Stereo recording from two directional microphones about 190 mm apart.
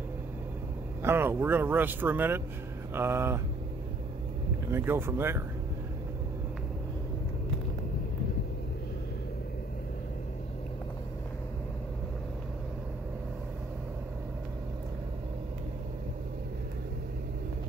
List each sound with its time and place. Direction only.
1.0 s speech: 10° right (ahead or behind)
4.6 s speech: 10° right (ahead or behind)